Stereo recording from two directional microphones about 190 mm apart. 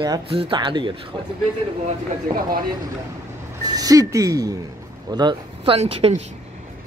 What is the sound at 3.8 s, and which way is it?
Speech, 20° right (ahead or behind).